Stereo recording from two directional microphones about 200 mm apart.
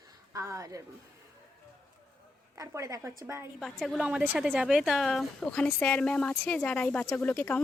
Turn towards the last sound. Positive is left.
turn(degrees=10)  # may be behind; listen again after turning